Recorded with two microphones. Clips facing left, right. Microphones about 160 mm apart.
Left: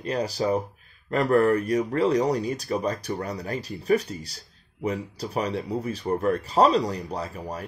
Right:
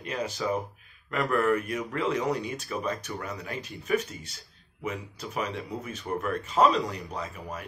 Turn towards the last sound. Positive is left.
turn(degrees=35)  # may be behind; listen again after turning